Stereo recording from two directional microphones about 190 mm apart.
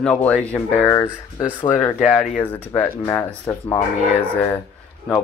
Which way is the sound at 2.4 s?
10° left (ahead or behind).